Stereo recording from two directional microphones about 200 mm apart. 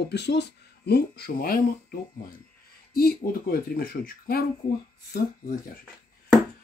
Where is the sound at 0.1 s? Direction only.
55° left (ahead or behind).